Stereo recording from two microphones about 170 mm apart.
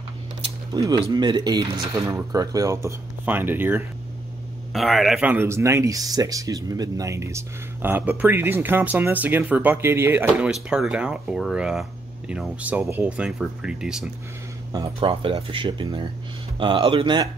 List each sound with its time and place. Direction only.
0.7 s speech: 20° right (ahead or behind)
4.7 s speech: centre (ahead or behind)
14.7 s speech: 25° right (ahead or behind)